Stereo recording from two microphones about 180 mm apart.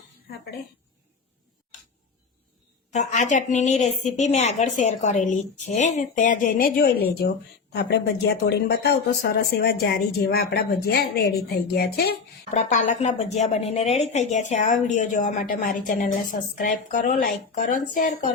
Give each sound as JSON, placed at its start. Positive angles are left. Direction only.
{"t": 2.9, "sound": "a woman's voice", "side_deg": 40}
{"t": 12.5, "sound": "a woman's voice", "side_deg": 40}